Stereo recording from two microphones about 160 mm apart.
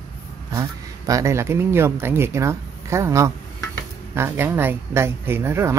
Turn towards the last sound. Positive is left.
turn(degrees=-15)  # may be behind; listen again after turning